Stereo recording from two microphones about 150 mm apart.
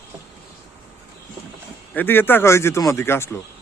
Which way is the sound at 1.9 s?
15° left (ahead or behind).